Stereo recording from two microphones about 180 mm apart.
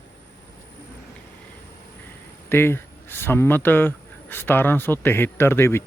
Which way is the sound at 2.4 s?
15° left (ahead or behind).